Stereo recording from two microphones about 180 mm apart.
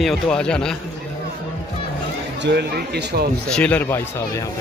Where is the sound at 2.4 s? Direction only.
65° right (ahead or behind).